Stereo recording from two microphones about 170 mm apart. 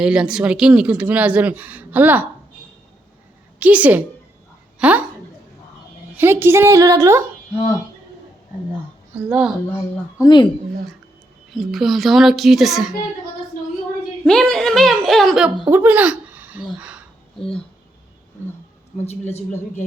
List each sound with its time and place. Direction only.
0.0 s speech: 5° right (ahead or behind)
3.6 s speech: 10° right (ahead or behind)
6.1 s speech: 15° right (ahead or behind)
9.1 s a child's voice: 5° right (ahead or behind)
10.2 s speech: 25° left (ahead or behind)
11.5 s a child's voice: centre (ahead or behind)
14.3 s a child's voice: 5° left (ahead or behind)
19.0 s speech: 40° left (ahead or behind)